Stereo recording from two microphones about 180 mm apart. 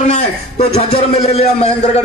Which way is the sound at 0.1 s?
40° left (ahead or behind).